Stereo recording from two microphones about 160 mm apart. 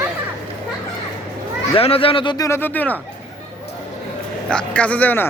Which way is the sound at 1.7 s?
35° left (ahead or behind).